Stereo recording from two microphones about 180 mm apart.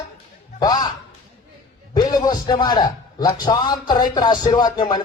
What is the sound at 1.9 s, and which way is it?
Speech, 20° left (ahead or behind).